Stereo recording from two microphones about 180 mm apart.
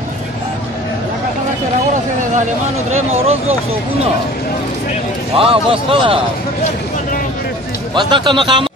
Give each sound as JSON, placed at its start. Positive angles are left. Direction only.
{"t": 5.4, "sound": "a man's voice", "side_deg": -30}
{"t": 7.9, "sound": "speech", "side_deg": -25}